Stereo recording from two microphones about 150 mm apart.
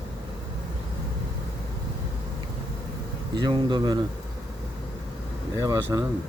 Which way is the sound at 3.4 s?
30° right (ahead or behind).